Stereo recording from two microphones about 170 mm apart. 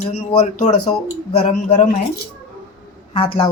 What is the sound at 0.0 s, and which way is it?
Speech, 35° left (ahead or behind).